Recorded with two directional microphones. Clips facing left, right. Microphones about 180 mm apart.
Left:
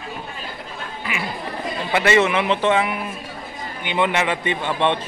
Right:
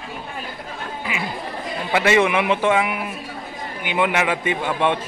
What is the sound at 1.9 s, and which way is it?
A man's voice, 15° right (ahead or behind).